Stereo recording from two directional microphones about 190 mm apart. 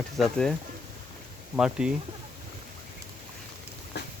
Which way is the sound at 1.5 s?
5° right (ahead or behind).